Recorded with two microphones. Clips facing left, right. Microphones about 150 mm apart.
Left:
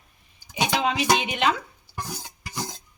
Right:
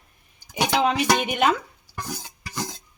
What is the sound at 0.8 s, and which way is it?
Speech, 50° right (ahead or behind).